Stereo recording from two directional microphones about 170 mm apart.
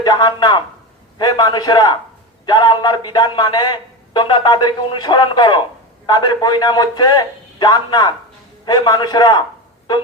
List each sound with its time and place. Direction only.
0.0 s speech: 25° left (ahead or behind)